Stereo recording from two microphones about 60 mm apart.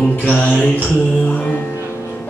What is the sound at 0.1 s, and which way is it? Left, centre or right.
Mantra, left.